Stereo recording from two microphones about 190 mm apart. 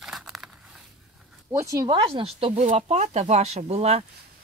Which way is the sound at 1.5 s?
15° right (ahead or behind).